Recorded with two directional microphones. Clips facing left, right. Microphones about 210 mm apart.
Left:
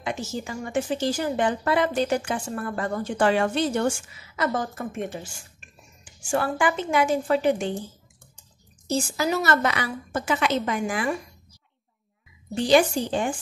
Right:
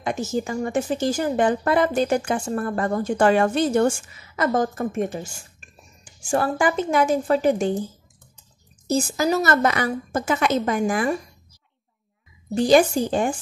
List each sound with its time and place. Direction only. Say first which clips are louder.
0.0 s a woman's voice: right 5 dB; 45° right (ahead or behind)
6.2 s a woman's voice: right 3 dB; 40° right (ahead or behind)
8.8 s a woman's voice: right 4 dB; 40° right (ahead or behind)
12.5 s a woman's voice: right 3 dB; 45° right (ahead or behind)